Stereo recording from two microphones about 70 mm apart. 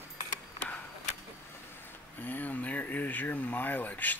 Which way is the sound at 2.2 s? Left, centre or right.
Left.